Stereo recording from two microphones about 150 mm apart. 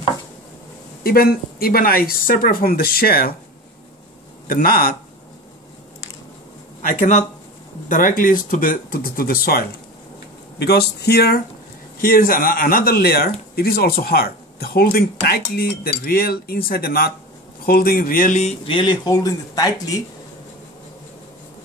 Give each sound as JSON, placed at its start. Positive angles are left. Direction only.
{"t": 1.0, "sound": "speech", "side_deg": 85}
{"t": 4.5, "sound": "speech", "side_deg": 75}
{"t": 6.8, "sound": "speech", "side_deg": 60}
{"t": 12.0, "sound": "speech", "side_deg": 70}